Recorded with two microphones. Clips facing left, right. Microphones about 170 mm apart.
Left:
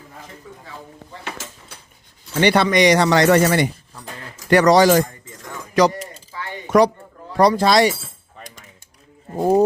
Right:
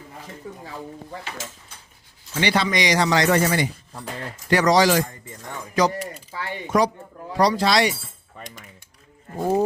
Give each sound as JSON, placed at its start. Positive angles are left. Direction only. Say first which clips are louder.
{"t": 2.4, "sound": "speech", "louder": "left 7 dB", "side_deg": 60}
{"t": 5.8, "sound": "speech", "louder": "left 5 dB", "side_deg": 80}
{"t": 6.7, "sound": "speech", "louder": "left 6 dB", "side_deg": 70}
{"t": 7.3, "sound": "speech", "louder": "left 4 dB", "side_deg": 55}
{"t": 9.3, "sound": "speech", "louder": "left 5 dB", "side_deg": 25}